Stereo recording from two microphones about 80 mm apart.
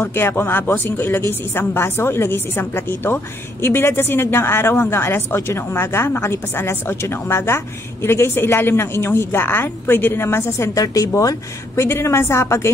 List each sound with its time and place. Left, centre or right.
0.0 s a woman's voice: left